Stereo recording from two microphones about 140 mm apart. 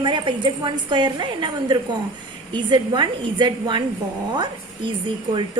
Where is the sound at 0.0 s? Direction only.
35° right (ahead or behind).